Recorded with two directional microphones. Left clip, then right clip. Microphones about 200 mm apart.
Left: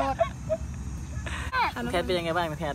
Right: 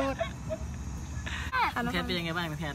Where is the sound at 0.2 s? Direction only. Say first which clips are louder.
Left 8 dB; centre (ahead or behind).